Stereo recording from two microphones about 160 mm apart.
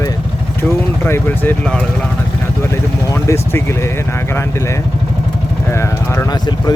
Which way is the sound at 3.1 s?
15° left (ahead or behind).